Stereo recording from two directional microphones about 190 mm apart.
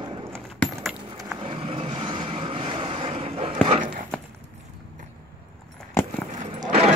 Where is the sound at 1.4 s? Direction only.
30° right (ahead or behind).